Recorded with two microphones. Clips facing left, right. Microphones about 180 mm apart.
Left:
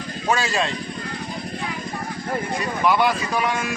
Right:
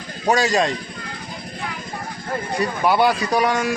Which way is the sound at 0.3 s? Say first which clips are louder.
Right 4 dB; 40° right (ahead or behind).